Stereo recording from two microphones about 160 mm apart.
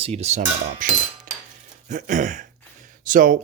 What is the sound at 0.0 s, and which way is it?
Speech, 40° right (ahead or behind).